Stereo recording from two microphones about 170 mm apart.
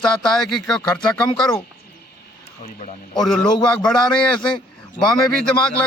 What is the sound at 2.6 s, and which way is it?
Speech, 40° left (ahead or behind).